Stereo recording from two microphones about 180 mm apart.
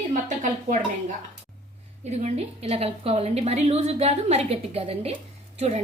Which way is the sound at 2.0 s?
40° right (ahead or behind).